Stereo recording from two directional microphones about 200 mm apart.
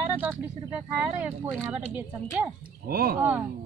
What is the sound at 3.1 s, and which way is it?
Speech, 10° right (ahead or behind).